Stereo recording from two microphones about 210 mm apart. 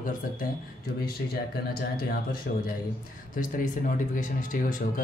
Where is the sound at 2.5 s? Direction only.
50° left (ahead or behind).